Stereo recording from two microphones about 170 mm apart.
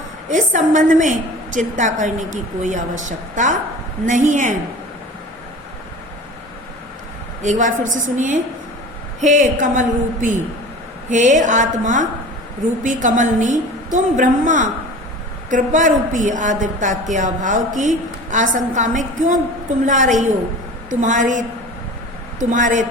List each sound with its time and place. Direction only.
0.3 s a woman's voice: 45° right (ahead or behind)
7.4 s a woman's voice: 45° right (ahead or behind)